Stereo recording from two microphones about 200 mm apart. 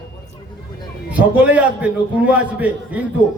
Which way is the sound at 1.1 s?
5° right (ahead or behind).